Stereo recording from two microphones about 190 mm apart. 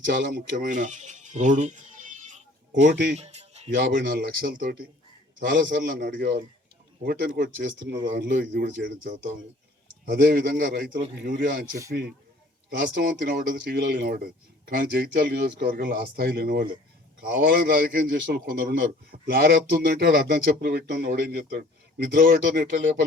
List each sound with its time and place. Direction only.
0.1 s speech: 60° right (ahead or behind); by 2.4 s 40° right (ahead or behind)
2.9 s a man's voice: 65° right (ahead or behind)
3.2 s music: 35° right (ahead or behind)
3.8 s a man's voice: 60° right (ahead or behind)
5.4 s a man's voice: 65° right (ahead or behind); by 7.5 s 50° right (ahead or behind)
7.6 s a man's voice: 65° right (ahead or behind)
10.1 s a man's voice: 50° right (ahead or behind)
12.8 s a man's voice: 55° right (ahead or behind)